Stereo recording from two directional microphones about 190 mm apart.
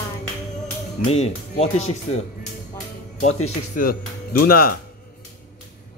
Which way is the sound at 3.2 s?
35° left (ahead or behind).